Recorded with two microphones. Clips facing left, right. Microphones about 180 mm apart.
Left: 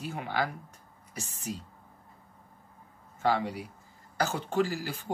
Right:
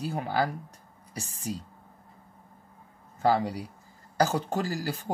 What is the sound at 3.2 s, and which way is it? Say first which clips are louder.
Speech: right 3 dB; 35° right (ahead or behind).